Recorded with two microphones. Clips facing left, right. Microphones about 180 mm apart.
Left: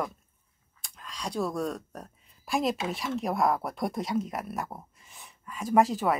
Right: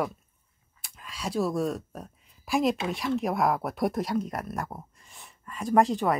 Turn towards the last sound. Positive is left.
turn(degrees=0)  # may be behind; listen again after turning